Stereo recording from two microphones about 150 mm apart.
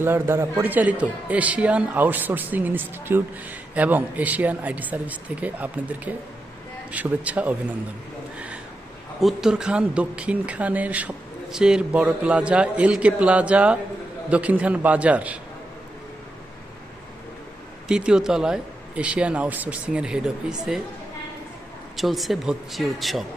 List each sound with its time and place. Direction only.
0.0 s a man's voice: 15° right (ahead or behind)
9.2 s a man's voice: 5° right (ahead or behind)
17.8 s speech: 5° right (ahead or behind)
21.9 s speech: centre (ahead or behind)